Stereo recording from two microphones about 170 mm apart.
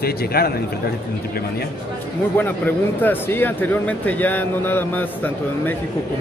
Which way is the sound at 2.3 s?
10° left (ahead or behind).